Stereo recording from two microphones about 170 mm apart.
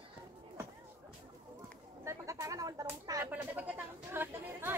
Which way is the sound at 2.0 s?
20° right (ahead or behind).